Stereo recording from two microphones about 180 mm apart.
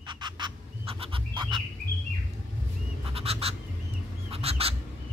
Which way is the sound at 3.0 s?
35° right (ahead or behind).